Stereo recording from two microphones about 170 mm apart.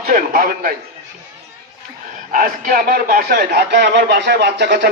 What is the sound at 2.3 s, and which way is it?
Speech, 55° right (ahead or behind).